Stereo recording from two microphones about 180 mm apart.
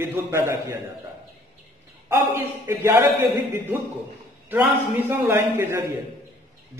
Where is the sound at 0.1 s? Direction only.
15° right (ahead or behind).